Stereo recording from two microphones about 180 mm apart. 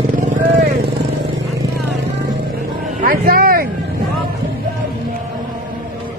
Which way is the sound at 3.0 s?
55° right (ahead or behind).